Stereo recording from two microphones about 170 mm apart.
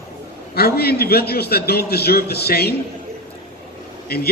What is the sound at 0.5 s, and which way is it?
A man's voice, 65° left (ahead or behind).